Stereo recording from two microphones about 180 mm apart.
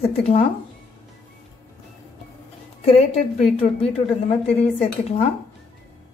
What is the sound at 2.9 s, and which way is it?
Speech, 35° left (ahead or behind).